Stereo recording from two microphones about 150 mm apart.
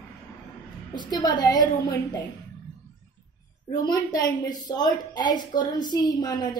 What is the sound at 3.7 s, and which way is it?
A woman's voice, 25° left (ahead or behind).